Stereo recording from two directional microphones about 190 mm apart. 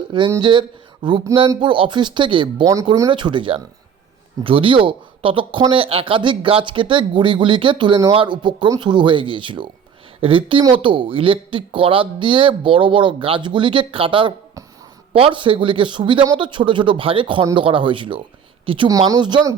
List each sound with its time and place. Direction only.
0.1 s speech: 20° right (ahead or behind)